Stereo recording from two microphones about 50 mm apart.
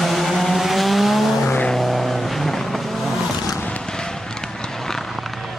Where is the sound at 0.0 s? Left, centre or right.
Centre.